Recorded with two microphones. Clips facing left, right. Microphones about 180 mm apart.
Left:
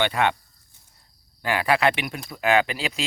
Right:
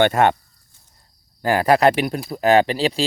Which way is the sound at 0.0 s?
45° right (ahead or behind).